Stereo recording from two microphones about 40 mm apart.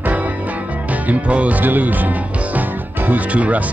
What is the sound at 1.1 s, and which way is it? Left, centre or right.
Music, right.